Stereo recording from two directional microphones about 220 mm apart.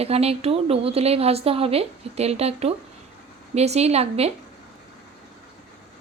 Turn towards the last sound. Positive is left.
turn(degrees=-30)  # may be behind; listen again after turning